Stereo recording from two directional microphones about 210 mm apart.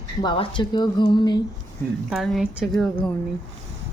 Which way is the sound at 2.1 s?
Centre (ahead or behind).